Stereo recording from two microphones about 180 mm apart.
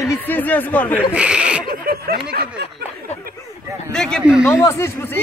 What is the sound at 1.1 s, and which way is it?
Speech, 5° right (ahead or behind).